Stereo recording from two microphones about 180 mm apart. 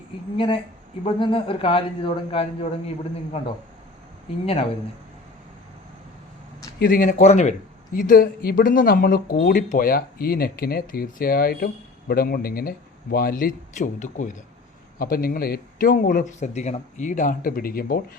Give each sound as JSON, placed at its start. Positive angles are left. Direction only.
{"t": 0.3, "sound": "a man's voice", "side_deg": 30}
{"t": 6.7, "sound": "speech", "side_deg": 55}
{"t": 14.9, "sound": "speech", "side_deg": 55}